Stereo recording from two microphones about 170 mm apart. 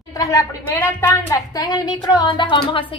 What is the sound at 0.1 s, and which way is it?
A woman's voice, 20° left (ahead or behind).